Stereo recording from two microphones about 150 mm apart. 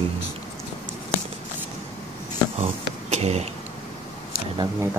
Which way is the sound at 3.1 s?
45° right (ahead or behind).